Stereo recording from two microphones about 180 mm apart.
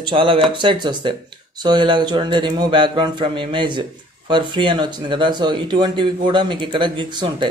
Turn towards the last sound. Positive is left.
turn(degrees=-25)  # may be behind; listen again after turning